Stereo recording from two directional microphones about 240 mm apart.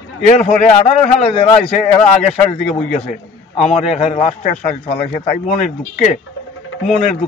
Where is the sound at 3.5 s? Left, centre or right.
Left.